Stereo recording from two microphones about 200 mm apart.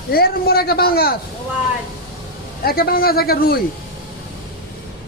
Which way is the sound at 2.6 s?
50° left (ahead or behind).